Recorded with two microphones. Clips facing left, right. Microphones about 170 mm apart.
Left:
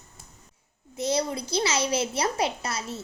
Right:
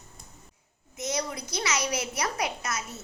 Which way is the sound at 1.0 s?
30° left (ahead or behind).